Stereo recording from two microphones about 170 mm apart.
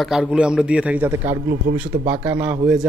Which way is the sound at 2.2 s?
10° right (ahead or behind).